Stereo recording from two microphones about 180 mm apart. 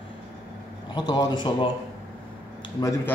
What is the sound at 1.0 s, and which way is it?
Speech, 25° left (ahead or behind).